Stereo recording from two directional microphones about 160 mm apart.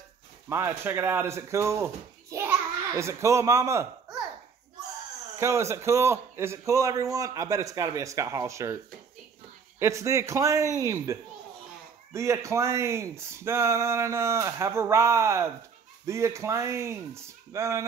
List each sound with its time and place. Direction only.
0.5 s speech: 15° right (ahead or behind)
5.4 s a man's voice: 15° right (ahead or behind)
9.8 s a man's voice: 20° right (ahead or behind)